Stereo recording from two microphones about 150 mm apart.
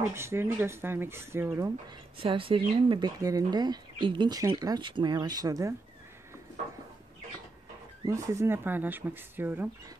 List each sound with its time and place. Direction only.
0.1 s speech: 15° right (ahead or behind)
2.1 s speech: 35° right (ahead or behind)
3.2 s speech: 25° right (ahead or behind)
8.1 s speech: 20° right (ahead or behind)